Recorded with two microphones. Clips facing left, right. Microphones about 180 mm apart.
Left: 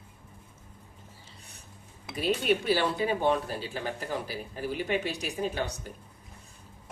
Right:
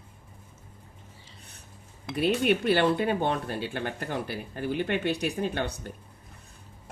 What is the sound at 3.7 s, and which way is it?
Speech, 60° right (ahead or behind).